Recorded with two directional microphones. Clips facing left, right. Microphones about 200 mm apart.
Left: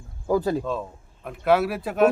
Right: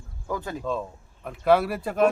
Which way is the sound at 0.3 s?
35° left (ahead or behind).